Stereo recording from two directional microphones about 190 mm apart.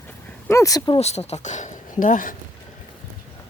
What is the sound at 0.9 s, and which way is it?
Speech, 35° left (ahead or behind).